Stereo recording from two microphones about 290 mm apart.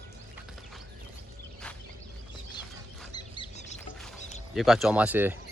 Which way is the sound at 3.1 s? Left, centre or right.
Centre.